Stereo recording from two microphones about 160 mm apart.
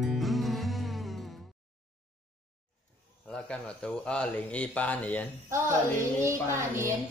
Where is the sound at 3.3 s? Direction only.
5° left (ahead or behind).